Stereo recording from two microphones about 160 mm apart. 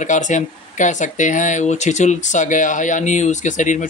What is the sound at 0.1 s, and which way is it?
Speech, 50° left (ahead or behind).